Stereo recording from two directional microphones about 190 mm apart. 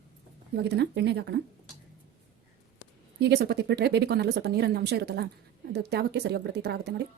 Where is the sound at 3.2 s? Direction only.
60° right (ahead or behind).